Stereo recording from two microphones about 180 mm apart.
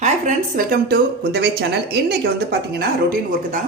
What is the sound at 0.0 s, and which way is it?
Speech, 45° right (ahead or behind).